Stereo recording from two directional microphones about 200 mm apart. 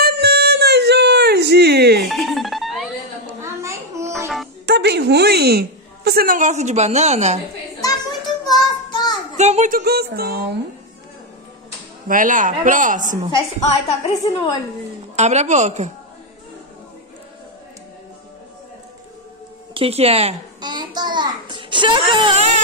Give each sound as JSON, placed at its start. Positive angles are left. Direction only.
{"t": 0.0, "sound": "a sound", "side_deg": -55}
{"t": 2.0, "sound": "music", "side_deg": 0}
{"t": 3.6, "sound": "a sound", "side_deg": -15}
{"t": 4.6, "sound": "a woman's voice", "side_deg": -55}
{"t": 8.5, "sound": "child singing", "side_deg": 20}
{"t": 9.4, "sound": "speech", "side_deg": -35}
{"t": 12.1, "sound": "a woman's voice", "side_deg": -40}
{"t": 13.3, "sound": "a woman's voice", "side_deg": 30}
{"t": 15.1, "sound": "a woman's voice", "side_deg": -35}
{"t": 19.7, "sound": "a child's voice", "side_deg": -30}